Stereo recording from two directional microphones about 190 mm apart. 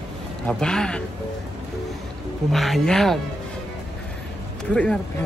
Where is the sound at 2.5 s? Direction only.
Centre (ahead or behind).